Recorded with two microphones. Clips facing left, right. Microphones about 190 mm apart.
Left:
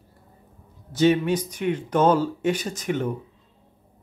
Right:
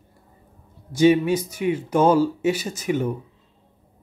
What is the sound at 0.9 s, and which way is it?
Speech, 10° right (ahead or behind).